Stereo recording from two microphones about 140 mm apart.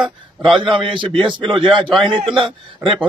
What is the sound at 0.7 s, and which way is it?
A man's voice, 35° right (ahead or behind).